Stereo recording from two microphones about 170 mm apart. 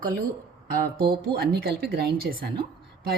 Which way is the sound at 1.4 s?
65° right (ahead or behind).